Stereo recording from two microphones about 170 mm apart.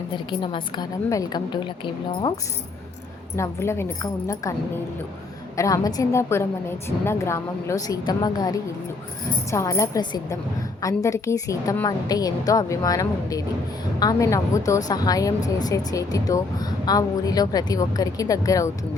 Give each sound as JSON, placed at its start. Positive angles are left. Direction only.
{"t": 0.3, "sound": "a woman's voice", "side_deg": 30}
{"t": 3.3, "sound": "a woman's voice", "side_deg": 15}
{"t": 5.5, "sound": "a woman's voice", "side_deg": 20}